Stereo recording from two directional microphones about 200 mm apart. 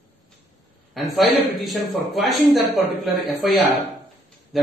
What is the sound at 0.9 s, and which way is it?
A man's voice, centre (ahead or behind).